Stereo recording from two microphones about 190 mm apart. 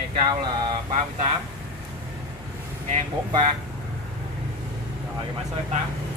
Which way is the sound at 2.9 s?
40° right (ahead or behind).